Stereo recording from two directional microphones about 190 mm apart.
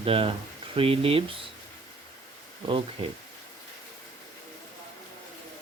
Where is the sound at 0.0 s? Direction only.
30° right (ahead or behind).